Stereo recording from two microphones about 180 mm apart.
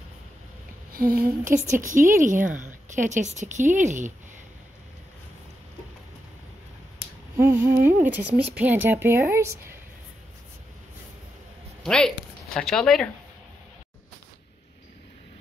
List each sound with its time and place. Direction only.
0.9 s a woman's voice: 55° right (ahead or behind)
7.3 s speech: 15° right (ahead or behind)
11.8 s speech: 5° left (ahead or behind)